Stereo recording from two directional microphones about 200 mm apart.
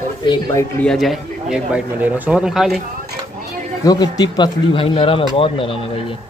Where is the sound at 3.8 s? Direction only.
20° left (ahead or behind).